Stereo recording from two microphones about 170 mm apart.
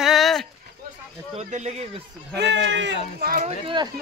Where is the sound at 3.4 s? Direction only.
30° right (ahead or behind).